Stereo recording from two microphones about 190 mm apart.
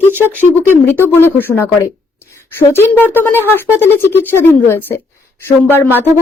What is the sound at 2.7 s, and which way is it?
Speech, 10° left (ahead or behind).